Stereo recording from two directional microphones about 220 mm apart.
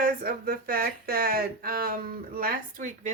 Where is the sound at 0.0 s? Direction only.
40° right (ahead or behind).